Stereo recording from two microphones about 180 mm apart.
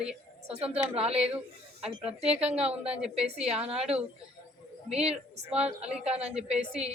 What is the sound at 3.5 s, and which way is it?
Speech, 35° right (ahead or behind).